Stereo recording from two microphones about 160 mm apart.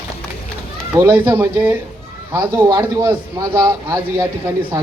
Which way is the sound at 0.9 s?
10° right (ahead or behind).